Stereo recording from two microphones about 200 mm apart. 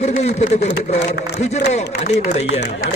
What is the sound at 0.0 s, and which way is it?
Speech, 35° left (ahead or behind).